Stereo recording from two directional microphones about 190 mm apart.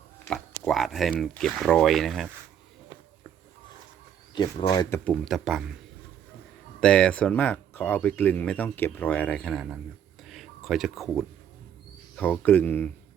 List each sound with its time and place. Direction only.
0.3 s speech: centre (ahead or behind)
4.4 s speech: 25° left (ahead or behind)
5.0 s speech: centre (ahead or behind)
6.7 s speech: 5° left (ahead or behind)
10.2 s a sound: centre (ahead or behind)
12.1 s speech: 10° left (ahead or behind)